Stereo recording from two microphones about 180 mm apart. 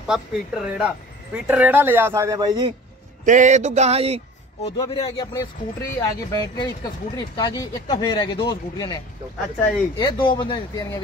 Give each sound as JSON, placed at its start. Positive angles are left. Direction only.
{"t": 0.0, "sound": "speech", "side_deg": -5}
{"t": 3.3, "sound": "a sound", "side_deg": -45}
{"t": 4.7, "sound": "speech", "side_deg": 25}